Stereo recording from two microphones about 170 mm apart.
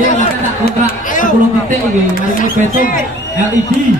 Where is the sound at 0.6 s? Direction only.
50° left (ahead or behind).